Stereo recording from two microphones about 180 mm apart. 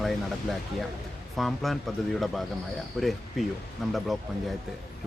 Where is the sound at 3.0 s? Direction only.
Centre (ahead or behind).